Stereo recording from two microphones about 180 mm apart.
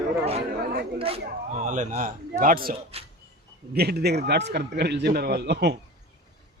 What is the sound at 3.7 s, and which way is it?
A man's voice, 65° right (ahead or behind).